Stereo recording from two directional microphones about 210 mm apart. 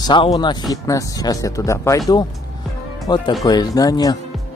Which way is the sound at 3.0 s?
20° left (ahead or behind).